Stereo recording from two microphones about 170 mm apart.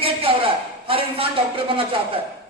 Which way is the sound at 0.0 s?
35° right (ahead or behind).